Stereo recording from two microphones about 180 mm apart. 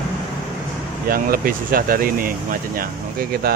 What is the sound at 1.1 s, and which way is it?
Speech, 55° right (ahead or behind).